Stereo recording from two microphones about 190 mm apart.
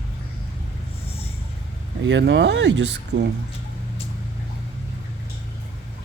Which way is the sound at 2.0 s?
70° right (ahead or behind).